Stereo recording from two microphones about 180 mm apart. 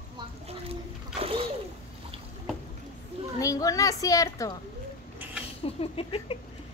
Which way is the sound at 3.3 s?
20° left (ahead or behind).